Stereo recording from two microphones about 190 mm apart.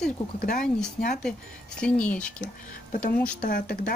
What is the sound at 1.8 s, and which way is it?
Speech, 5° left (ahead or behind).